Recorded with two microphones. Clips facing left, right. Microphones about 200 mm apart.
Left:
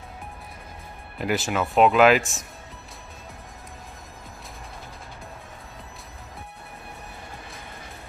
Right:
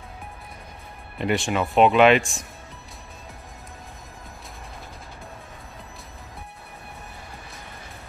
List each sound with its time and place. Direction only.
1.1 s speech: 5° left (ahead or behind)